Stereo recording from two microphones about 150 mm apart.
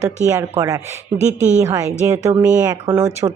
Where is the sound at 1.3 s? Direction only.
50° right (ahead or behind).